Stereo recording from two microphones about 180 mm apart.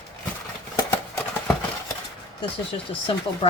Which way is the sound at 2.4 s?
30° left (ahead or behind).